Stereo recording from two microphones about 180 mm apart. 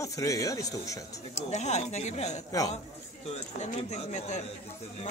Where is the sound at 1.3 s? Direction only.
40° left (ahead or behind).